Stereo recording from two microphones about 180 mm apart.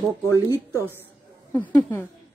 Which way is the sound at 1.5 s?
10° left (ahead or behind).